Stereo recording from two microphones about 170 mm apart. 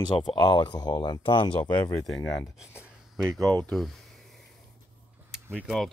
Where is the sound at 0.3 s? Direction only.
25° left (ahead or behind).